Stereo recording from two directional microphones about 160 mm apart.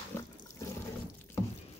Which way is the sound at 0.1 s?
15° left (ahead or behind).